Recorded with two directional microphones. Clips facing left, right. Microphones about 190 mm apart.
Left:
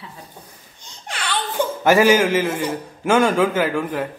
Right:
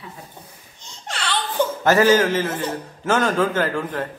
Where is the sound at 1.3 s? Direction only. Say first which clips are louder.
Even; 10° left (ahead or behind).